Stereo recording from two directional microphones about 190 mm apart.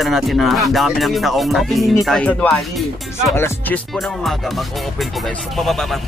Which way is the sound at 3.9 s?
Centre (ahead or behind).